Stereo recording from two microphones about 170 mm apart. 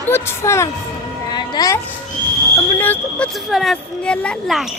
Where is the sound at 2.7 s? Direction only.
10° left (ahead or behind).